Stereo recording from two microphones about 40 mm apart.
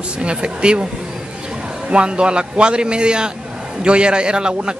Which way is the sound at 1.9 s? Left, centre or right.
Right.